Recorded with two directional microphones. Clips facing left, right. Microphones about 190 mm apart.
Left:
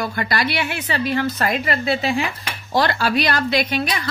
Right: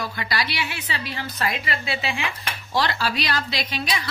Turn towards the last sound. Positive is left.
turn(degrees=55)  # may be behind; listen again after turning